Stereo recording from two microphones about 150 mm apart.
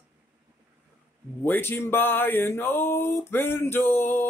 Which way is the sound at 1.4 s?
15° left (ahead or behind).